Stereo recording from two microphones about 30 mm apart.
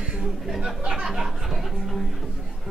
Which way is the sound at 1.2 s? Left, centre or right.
Centre.